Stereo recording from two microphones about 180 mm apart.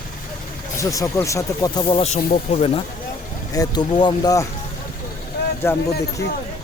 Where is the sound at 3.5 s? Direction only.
20° left (ahead or behind).